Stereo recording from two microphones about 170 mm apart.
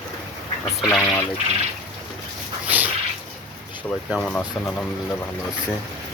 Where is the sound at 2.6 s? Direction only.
10° right (ahead or behind).